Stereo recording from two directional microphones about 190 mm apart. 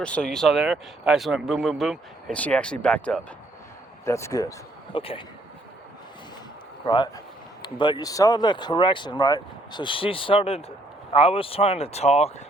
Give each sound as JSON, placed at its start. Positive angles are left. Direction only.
{"t": 0.0, "sound": "speech", "side_deg": 5}
{"t": 4.9, "sound": "speech", "side_deg": 30}
{"t": 6.8, "sound": "speech", "side_deg": 25}